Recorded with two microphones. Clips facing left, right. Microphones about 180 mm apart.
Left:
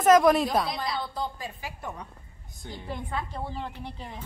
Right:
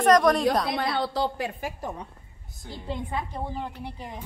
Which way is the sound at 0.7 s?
65° right (ahead or behind).